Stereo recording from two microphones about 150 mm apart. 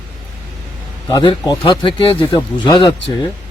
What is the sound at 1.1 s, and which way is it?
Speech, 30° left (ahead or behind).